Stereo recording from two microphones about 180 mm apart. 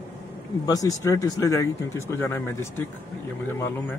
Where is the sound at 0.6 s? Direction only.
20° left (ahead or behind).